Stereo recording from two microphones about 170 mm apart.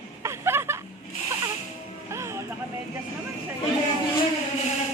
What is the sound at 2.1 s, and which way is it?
Music, 15° right (ahead or behind).